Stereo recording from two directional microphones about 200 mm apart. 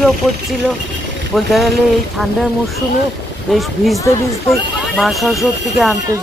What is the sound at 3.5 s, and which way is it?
Speech, centre (ahead or behind).